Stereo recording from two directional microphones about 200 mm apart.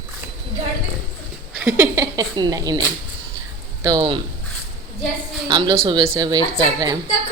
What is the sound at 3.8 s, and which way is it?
Speech, 20° right (ahead or behind).